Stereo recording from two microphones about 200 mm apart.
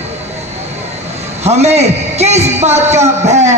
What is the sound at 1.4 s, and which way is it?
A man's voice, 35° right (ahead or behind).